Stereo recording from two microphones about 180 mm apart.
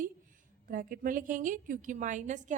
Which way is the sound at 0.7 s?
50° right (ahead or behind).